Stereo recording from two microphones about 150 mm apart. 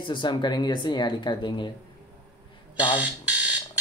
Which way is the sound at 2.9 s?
10° right (ahead or behind).